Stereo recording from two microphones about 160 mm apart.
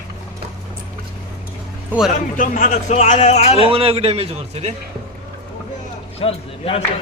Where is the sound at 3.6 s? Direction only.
35° right (ahead or behind).